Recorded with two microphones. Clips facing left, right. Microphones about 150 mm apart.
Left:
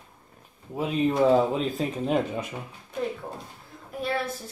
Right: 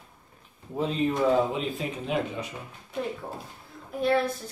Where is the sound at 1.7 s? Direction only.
40° left (ahead or behind).